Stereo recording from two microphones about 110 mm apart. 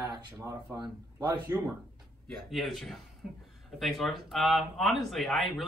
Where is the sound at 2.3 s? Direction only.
Centre (ahead or behind).